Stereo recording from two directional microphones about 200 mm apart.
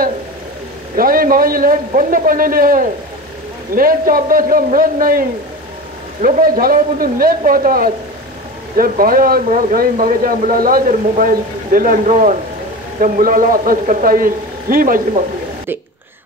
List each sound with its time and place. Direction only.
0.9 s a man's voice: 45° right (ahead or behind)
6.2 s a man's voice: 45° right (ahead or behind)